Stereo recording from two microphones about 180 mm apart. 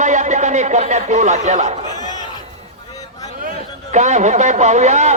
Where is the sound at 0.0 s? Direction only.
40° right (ahead or behind).